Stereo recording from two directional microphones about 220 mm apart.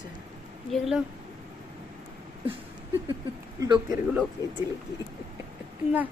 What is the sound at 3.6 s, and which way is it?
Speech, 20° right (ahead or behind).